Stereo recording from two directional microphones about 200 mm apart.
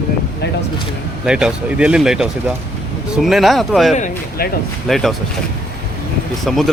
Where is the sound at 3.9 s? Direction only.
40° left (ahead or behind).